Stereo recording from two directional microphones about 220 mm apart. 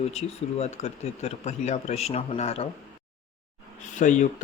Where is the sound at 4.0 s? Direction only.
35° left (ahead or behind).